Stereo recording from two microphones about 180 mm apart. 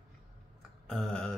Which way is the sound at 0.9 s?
5° left (ahead or behind).